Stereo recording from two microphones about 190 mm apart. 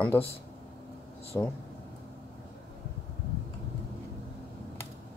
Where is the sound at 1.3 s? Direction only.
15° left (ahead or behind).